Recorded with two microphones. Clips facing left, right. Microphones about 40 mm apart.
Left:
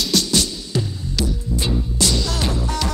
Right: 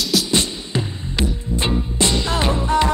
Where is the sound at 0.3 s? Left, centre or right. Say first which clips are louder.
Right 1 dB; right.